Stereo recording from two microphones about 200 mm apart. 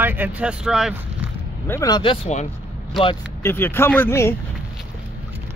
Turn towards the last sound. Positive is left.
turn(degrees=10)  # may be behind; listen again after turning